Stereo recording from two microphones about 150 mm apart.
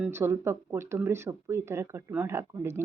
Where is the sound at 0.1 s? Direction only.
15° right (ahead or behind).